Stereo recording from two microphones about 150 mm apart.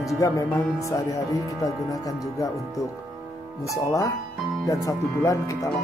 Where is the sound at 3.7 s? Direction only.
20° left (ahead or behind).